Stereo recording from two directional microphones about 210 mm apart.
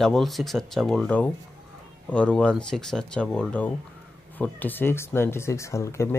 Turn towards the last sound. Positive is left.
turn(degrees=15)  # may be behind; listen again after turning